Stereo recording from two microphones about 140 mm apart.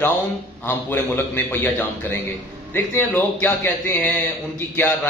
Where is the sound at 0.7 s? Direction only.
15° left (ahead or behind).